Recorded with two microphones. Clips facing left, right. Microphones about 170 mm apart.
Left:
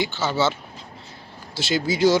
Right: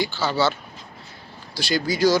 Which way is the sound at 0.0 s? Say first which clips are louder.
Even; 20° left (ahead or behind).